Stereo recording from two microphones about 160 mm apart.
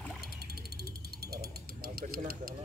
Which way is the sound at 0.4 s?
75° right (ahead or behind).